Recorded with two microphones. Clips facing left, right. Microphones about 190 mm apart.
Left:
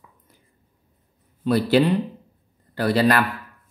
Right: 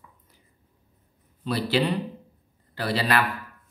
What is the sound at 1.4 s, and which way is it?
A man's voice, 50° left (ahead or behind).